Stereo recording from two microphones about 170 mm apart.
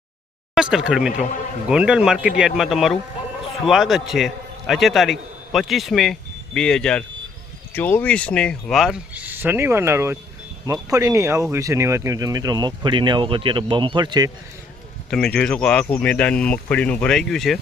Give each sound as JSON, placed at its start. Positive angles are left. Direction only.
{"t": 0.5, "sound": "a man's voice", "side_deg": -5}
{"t": 15.4, "sound": "speech", "side_deg": 5}